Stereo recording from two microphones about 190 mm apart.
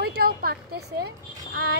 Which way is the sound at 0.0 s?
55° right (ahead or behind).